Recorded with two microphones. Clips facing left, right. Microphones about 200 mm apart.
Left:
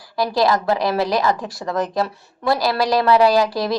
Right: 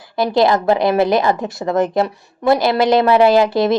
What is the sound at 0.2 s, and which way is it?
A woman's voice, 20° right (ahead or behind).